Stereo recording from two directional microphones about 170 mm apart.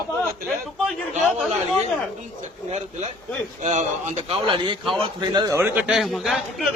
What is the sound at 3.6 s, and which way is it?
Speech, 45° right (ahead or behind).